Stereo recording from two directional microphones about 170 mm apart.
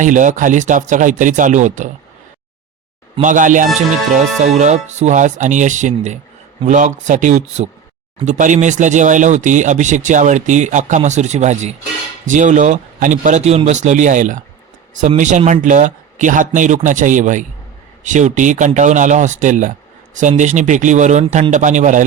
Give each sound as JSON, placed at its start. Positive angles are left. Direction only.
{"t": 0.0, "sound": "speech", "side_deg": -50}
{"t": 3.2, "sound": "speech", "side_deg": -50}